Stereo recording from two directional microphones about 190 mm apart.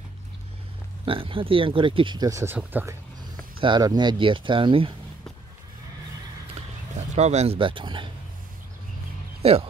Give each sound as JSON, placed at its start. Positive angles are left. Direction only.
{"t": 1.0, "sound": "speech", "side_deg": -25}
{"t": 3.6, "sound": "speech", "side_deg": -25}
{"t": 7.0, "sound": "speech", "side_deg": -35}
{"t": 9.4, "sound": "speech", "side_deg": -30}